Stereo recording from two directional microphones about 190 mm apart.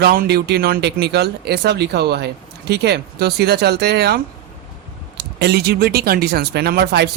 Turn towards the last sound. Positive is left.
turn(degrees=-60)  # may be behind; listen again after turning